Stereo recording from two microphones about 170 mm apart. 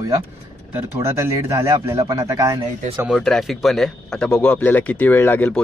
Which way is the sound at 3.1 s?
Centre (ahead or behind).